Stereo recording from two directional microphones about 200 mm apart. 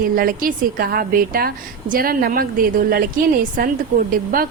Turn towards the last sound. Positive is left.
turn(degrees=-45)  # may be behind; listen again after turning